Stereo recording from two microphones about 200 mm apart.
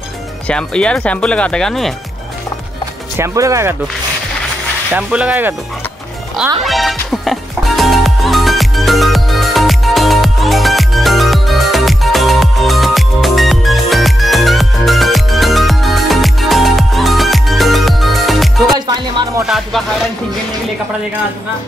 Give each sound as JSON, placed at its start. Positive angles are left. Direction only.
{"t": 0.5, "sound": "speech", "side_deg": 5}
{"t": 3.2, "sound": "speech", "side_deg": -15}
{"t": 4.9, "sound": "speech", "side_deg": -5}
{"t": 6.6, "sound": "music", "side_deg": 0}
{"t": 18.9, "sound": "music", "side_deg": -20}
{"t": 19.4, "sound": "speech", "side_deg": 0}